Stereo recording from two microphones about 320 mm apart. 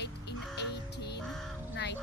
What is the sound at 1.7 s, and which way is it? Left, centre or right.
Speech, left.